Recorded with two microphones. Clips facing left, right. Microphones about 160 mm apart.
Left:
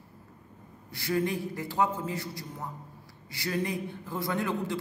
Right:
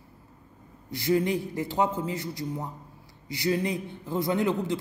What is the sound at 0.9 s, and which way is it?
A man's voice, 20° right (ahead or behind).